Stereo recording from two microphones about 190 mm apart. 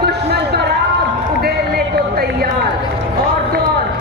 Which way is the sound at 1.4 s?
55° right (ahead or behind).